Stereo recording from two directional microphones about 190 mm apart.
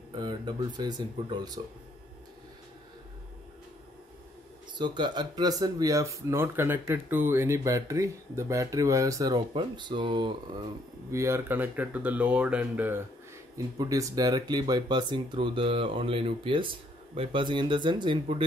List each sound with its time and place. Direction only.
0.1 s speech: 25° right (ahead or behind)
4.7 s speech: 25° right (ahead or behind)